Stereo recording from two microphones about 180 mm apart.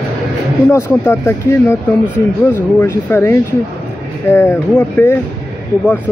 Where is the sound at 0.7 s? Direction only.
15° left (ahead or behind).